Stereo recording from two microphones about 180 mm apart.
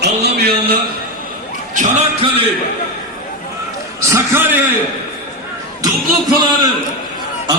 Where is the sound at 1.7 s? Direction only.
40° right (ahead or behind).